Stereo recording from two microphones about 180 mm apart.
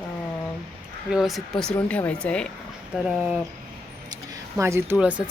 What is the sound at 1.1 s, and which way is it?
Speech, centre (ahead or behind).